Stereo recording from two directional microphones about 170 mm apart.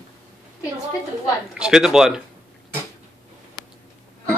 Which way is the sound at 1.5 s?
5° right (ahead or behind).